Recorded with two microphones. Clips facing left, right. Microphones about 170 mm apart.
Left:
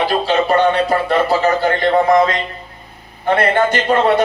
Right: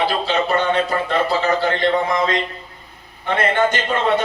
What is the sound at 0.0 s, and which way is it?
A man's voice, 40° left (ahead or behind).